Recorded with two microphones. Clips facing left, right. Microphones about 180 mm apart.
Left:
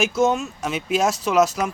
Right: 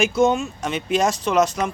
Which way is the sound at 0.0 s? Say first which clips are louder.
Right 2 dB; centre (ahead or behind).